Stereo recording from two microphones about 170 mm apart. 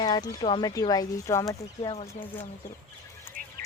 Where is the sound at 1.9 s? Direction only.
35° left (ahead or behind).